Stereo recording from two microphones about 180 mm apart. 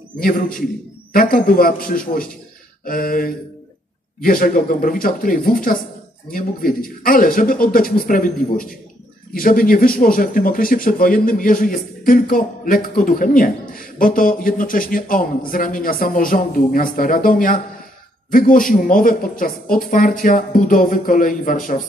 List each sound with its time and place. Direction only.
0.2 s speech: 50° left (ahead or behind)